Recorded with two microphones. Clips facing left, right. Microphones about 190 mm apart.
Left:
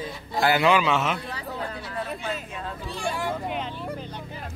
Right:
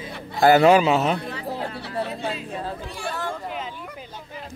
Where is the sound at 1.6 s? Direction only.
70° right (ahead or behind).